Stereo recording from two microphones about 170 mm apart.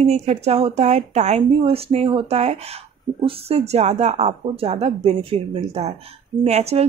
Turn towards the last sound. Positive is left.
turn(degrees=-40)  # may be behind; listen again after turning